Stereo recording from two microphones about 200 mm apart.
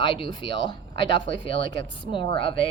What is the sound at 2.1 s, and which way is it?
Speech, 25° left (ahead or behind).